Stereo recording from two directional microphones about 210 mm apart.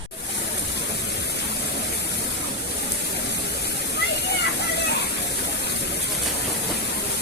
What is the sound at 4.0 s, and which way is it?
Waterfall, 55° left (ahead or behind).